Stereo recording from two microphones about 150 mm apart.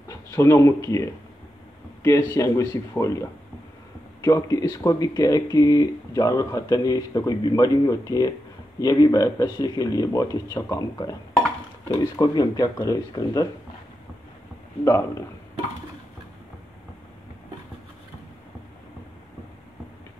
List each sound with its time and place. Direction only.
0.1 s speech: 20° left (ahead or behind)